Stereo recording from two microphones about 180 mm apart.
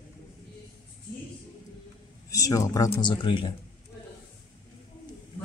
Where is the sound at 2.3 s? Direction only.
20° left (ahead or behind).